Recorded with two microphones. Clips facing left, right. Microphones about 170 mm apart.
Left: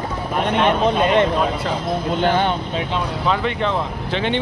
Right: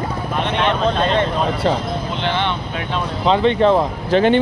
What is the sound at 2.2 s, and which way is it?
Speech, 45° left (ahead or behind).